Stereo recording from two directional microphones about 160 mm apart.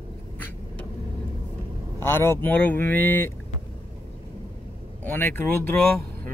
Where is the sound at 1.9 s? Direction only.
15° left (ahead or behind).